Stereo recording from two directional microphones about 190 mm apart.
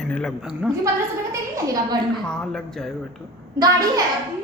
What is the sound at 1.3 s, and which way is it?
Speech, 20° right (ahead or behind).